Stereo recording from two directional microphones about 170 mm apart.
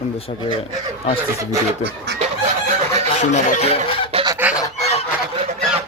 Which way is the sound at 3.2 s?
45° left (ahead or behind).